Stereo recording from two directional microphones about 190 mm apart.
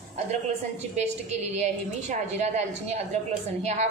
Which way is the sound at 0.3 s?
35° right (ahead or behind).